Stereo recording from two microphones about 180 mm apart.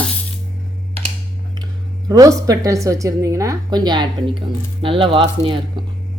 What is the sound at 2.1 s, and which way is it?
A woman's voice, 20° right (ahead or behind).